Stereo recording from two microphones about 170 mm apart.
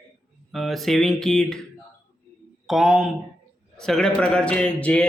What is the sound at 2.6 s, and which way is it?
A man's voice, centre (ahead or behind).